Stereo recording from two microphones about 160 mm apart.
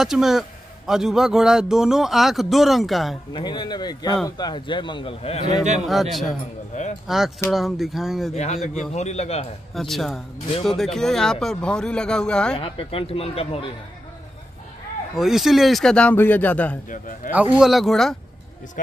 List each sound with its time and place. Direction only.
0.0 s a man's voice: centre (ahead or behind)
3.3 s speech: 30° left (ahead or behind)
5.9 s a man's voice: centre (ahead or behind)
6.7 s a man's voice: 50° left (ahead or behind)
7.1 s a man's voice: centre (ahead or behind)
8.9 s a man's voice: 45° left (ahead or behind)
9.8 s a man's voice: centre (ahead or behind)
12.5 s speech: 35° left (ahead or behind)
15.1 s a man's voice: centre (ahead or behind)
17.3 s a man's voice: 10° right (ahead or behind)